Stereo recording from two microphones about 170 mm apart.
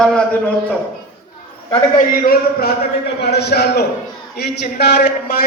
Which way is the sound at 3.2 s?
75° left (ahead or behind).